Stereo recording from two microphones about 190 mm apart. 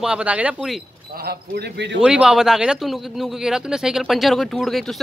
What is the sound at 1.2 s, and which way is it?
Speech, 55° right (ahead or behind).